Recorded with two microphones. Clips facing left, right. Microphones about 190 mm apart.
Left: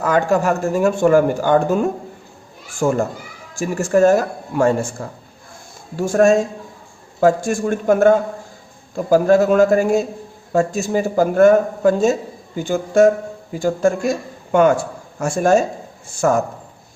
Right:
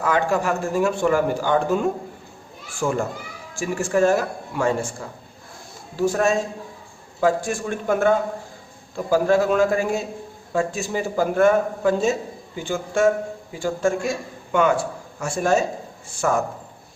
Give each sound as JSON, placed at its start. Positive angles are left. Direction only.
{"t": 0.0, "sound": "speech", "side_deg": 45}